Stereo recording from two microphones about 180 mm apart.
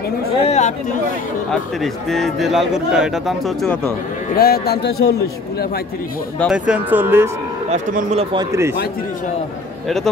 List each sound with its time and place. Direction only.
0.4 s speech: 40° left (ahead or behind)
1.5 s a man's voice: centre (ahead or behind)
3.6 s speech: 10° left (ahead or behind)
4.4 s speech: 60° left (ahead or behind)
6.4 s speech: 5° right (ahead or behind)
7.7 s speech: 40° right (ahead or behind)
8.5 s speech: 15° right (ahead or behind)